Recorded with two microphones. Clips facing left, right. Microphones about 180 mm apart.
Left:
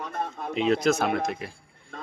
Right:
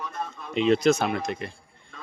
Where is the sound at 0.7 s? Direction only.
Centre (ahead or behind).